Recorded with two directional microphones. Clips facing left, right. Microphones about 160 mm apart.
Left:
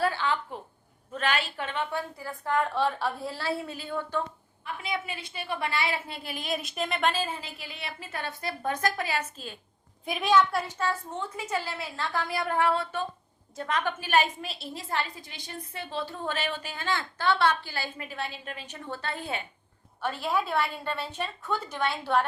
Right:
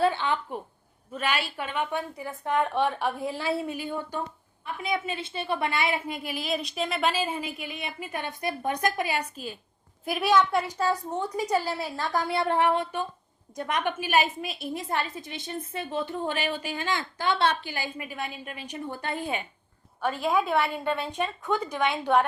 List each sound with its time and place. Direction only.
0.0 s a woman's voice: 20° right (ahead or behind)
6.4 s a woman's voice: centre (ahead or behind)
10.8 s a woman's voice: 40° right (ahead or behind)
12.3 s a woman's voice: 25° right (ahead or behind)
20.5 s a woman's voice: 20° right (ahead or behind)